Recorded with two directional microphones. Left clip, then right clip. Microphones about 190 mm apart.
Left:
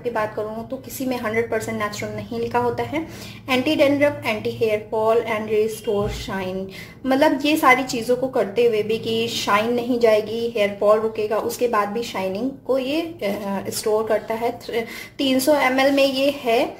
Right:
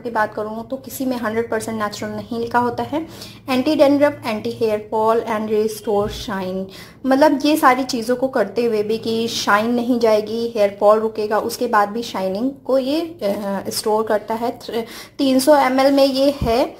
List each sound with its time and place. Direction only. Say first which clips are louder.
1.2 s a woman's voice: even; 25° right (ahead or behind)